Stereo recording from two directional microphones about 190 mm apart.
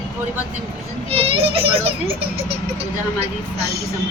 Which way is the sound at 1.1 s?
30° right (ahead or behind).